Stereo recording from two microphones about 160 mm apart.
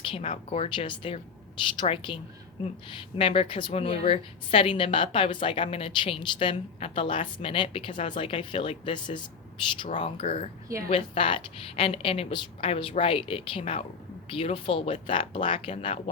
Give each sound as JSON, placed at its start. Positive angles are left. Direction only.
{"t": 0.0, "sound": "a woman's voice", "side_deg": 35}